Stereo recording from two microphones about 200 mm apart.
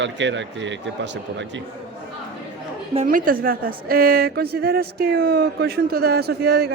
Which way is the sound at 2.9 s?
40° right (ahead or behind).